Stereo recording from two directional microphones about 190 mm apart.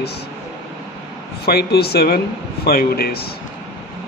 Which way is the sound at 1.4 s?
55° left (ahead or behind).